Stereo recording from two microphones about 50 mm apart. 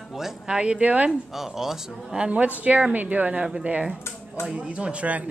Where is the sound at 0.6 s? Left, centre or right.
Right.